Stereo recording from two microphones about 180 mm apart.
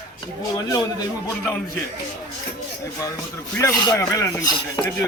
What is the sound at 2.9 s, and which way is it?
A man's voice, 20° left (ahead or behind).